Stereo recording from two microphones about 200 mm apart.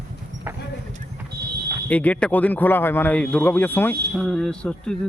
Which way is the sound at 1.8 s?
5° left (ahead or behind).